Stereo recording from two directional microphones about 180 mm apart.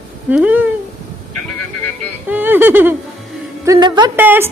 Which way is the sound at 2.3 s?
10° right (ahead or behind).